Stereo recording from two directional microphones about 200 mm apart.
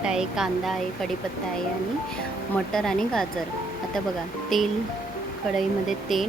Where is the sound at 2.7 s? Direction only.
Centre (ahead or behind).